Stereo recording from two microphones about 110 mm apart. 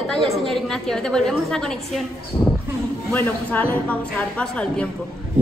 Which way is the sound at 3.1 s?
15° left (ahead or behind).